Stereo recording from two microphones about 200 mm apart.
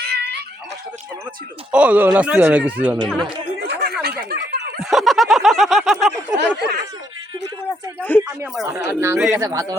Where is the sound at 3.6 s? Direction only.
50° right (ahead or behind).